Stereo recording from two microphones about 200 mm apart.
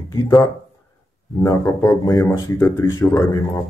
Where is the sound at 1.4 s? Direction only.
15° left (ahead or behind).